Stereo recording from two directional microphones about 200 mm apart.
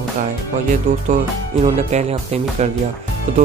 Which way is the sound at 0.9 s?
35° right (ahead or behind).